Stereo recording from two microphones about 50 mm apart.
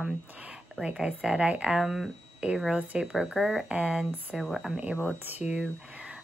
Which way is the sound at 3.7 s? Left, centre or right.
Centre.